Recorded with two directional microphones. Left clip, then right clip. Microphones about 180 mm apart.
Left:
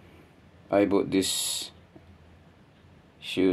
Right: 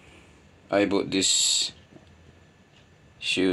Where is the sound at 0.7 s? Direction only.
Centre (ahead or behind).